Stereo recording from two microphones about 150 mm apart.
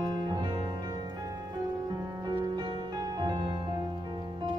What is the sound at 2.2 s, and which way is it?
Music, 30° right (ahead or behind).